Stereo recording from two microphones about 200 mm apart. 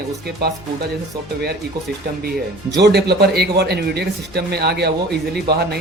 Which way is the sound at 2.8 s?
55° right (ahead or behind).